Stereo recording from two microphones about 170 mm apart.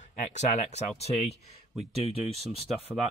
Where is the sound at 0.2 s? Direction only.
45° left (ahead or behind).